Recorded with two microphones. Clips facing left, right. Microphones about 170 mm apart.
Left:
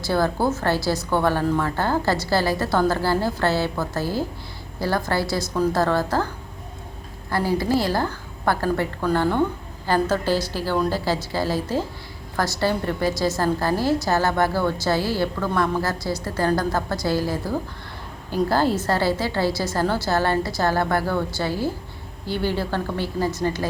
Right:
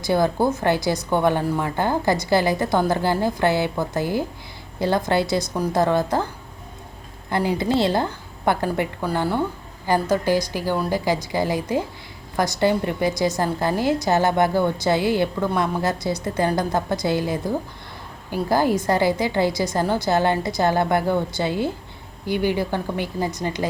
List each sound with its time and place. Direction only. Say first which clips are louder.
0.0 s a woman's voice: right 2 dB; 20° right (ahead or behind)
7.3 s a woman's voice: even; 20° right (ahead or behind)